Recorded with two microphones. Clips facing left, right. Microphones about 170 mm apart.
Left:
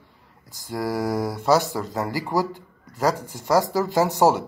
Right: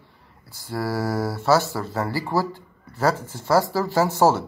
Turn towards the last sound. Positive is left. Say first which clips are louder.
# even
turn(degrees=15)  # may be behind; listen again after turning